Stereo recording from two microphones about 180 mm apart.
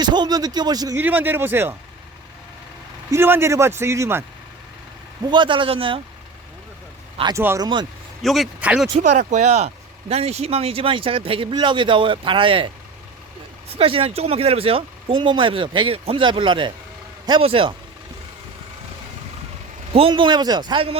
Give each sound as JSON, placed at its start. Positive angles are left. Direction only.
{"t": 0.0, "sound": "speech", "side_deg": -25}
{"t": 3.1, "sound": "speech", "side_deg": -15}
{"t": 5.2, "sound": "speech", "side_deg": -25}
{"t": 7.2, "sound": "speech", "side_deg": -25}
{"t": 8.2, "sound": "a man's voice", "side_deg": 0}
{"t": 9.0, "sound": "speech", "side_deg": -40}
{"t": 19.9, "sound": "speech", "side_deg": -30}